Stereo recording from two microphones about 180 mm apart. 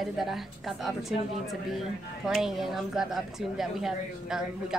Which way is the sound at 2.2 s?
Centre (ahead or behind).